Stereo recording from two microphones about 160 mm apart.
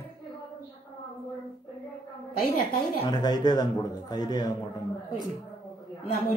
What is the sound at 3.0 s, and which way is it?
A man's voice, 25° left (ahead or behind).